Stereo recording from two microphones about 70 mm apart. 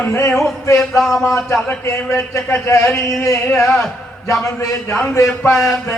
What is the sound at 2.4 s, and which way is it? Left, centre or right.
Speech, left.